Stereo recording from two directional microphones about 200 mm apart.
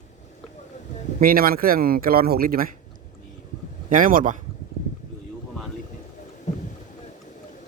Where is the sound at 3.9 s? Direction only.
45° right (ahead or behind).